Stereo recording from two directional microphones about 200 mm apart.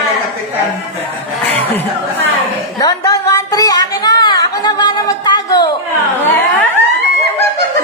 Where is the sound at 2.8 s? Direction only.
20° left (ahead or behind).